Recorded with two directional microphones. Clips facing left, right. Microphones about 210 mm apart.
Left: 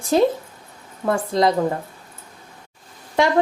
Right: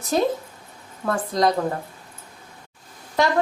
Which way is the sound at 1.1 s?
25° left (ahead or behind).